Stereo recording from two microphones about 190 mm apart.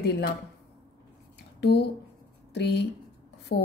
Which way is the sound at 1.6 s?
60° left (ahead or behind).